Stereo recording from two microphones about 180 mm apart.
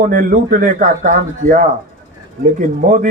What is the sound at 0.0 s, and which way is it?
A man's voice, 50° right (ahead or behind).